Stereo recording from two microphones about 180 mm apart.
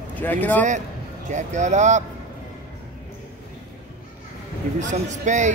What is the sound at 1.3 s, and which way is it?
Speech, 40° right (ahead or behind).